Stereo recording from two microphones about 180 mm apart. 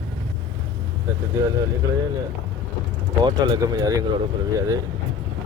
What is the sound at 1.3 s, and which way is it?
Speech, 20° right (ahead or behind).